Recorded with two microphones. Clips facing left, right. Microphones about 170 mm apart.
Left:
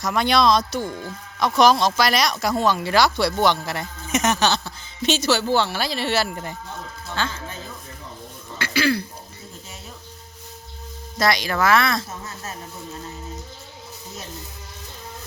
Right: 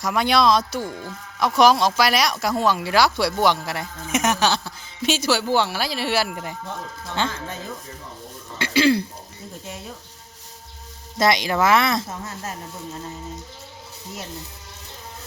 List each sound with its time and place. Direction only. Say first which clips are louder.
0.0 s speech: even; 5° right (ahead or behind)
7.2 s speech: right 2 dB; 20° right (ahead or behind)
8.5 s throat clearing: right 4 dB; 25° right (ahead or behind)
11.2 s speech: right 2 dB; 20° right (ahead or behind)